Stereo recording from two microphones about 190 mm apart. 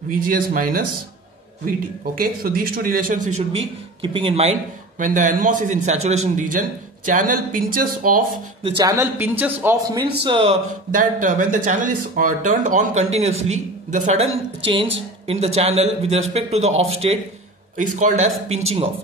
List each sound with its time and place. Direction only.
0.1 s speech: 50° right (ahead or behind)
2.1 s a man's voice: 50° right (ahead or behind)
8.6 s a man's voice: 20° right (ahead or behind)
10.2 s speech: 30° right (ahead or behind)
10.9 s a man's voice: 45° right (ahead or behind)
14.6 s a man's voice: 30° right (ahead or behind)